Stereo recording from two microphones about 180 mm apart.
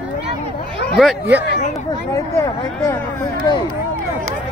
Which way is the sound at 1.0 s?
5° right (ahead or behind).